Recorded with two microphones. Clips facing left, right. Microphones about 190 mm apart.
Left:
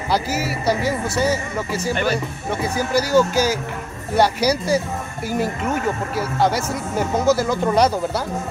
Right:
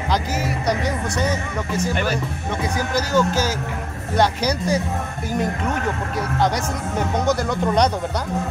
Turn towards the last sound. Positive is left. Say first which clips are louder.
# left 2 dB
turn(degrees=5)  # may be behind; listen again after turning